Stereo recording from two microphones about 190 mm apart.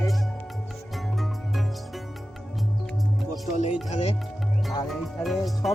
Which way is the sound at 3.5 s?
35° left (ahead or behind).